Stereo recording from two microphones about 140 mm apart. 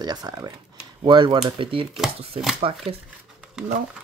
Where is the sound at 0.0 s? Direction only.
30° right (ahead or behind).